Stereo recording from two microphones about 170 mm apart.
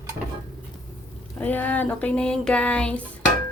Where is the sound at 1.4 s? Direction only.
10° left (ahead or behind).